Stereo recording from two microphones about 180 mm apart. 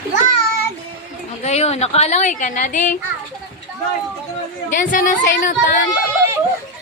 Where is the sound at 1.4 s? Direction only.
35° left (ahead or behind).